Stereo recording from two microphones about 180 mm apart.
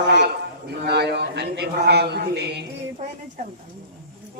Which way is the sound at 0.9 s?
65° right (ahead or behind).